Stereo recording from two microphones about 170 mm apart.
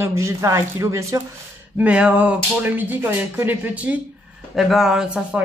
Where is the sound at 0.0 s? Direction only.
15° right (ahead or behind).